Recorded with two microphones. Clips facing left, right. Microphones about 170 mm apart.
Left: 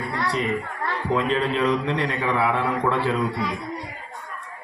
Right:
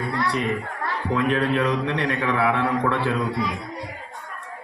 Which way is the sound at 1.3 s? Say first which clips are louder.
Right 1 dB; 60° right (ahead or behind).